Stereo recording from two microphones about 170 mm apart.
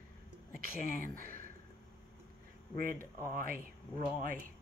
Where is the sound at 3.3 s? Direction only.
55° right (ahead or behind).